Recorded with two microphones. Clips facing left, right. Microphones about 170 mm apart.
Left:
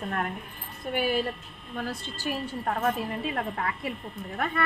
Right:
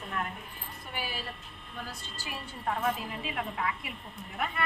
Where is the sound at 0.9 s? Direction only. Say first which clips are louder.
Left 12 dB; 55° left (ahead or behind).